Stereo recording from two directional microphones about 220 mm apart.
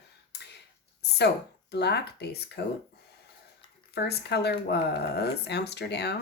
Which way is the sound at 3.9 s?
45° left (ahead or behind).